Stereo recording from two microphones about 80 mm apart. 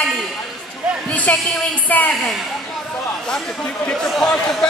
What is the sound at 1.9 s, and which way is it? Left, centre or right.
Speech, centre.